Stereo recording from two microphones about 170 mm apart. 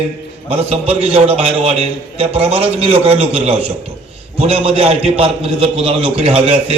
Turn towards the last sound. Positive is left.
turn(degrees=-35)  # may be behind; listen again after turning